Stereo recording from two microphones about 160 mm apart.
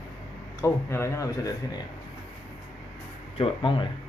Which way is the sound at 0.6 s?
15° left (ahead or behind).